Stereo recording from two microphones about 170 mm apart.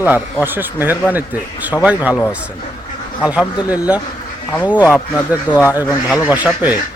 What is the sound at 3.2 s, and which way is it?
Speech, 5° right (ahead or behind).